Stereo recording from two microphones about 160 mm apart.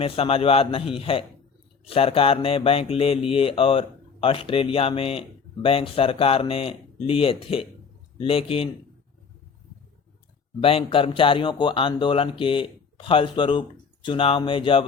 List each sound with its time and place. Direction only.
0.0 s speech: 35° left (ahead or behind)
10.6 s speech: 35° left (ahead or behind)